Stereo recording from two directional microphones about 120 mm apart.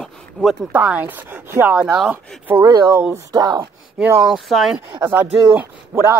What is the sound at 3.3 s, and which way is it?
Speech, 35° right (ahead or behind).